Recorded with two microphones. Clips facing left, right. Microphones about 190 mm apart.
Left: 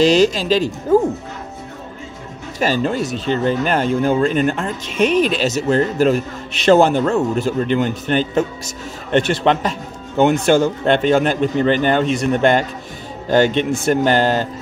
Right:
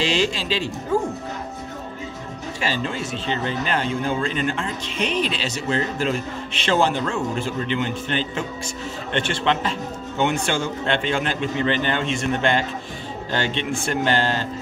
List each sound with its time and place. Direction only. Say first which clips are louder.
0.0 s speech: left 9 dB; 40° left (ahead or behind)
2.6 s speech: left 8 dB; 45° left (ahead or behind)